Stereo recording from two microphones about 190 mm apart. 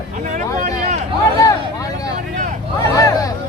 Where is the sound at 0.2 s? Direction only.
40° right (ahead or behind).